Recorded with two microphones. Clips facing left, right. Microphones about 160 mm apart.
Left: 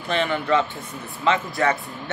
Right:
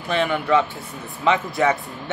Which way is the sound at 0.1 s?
10° right (ahead or behind).